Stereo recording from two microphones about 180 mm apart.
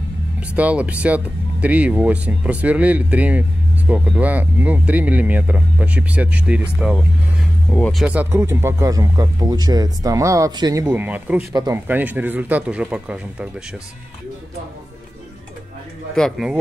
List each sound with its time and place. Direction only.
0.4 s speech: 5° right (ahead or behind)
8.0 s speech: 10° right (ahead or behind)
10.9 s speech: 10° right (ahead or behind)
11.5 s speech: 20° right (ahead or behind)
11.9 s speech: 10° right (ahead or behind)
16.2 s speech: centre (ahead or behind)